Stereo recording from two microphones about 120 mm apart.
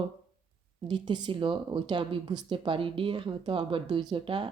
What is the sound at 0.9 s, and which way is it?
Speech, 40° right (ahead or behind).